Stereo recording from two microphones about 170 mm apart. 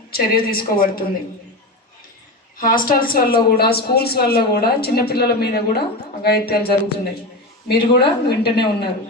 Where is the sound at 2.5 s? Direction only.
55° left (ahead or behind).